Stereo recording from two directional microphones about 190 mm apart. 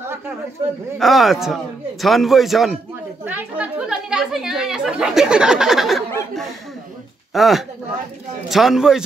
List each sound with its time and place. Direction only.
0.9 s speech: centre (ahead or behind)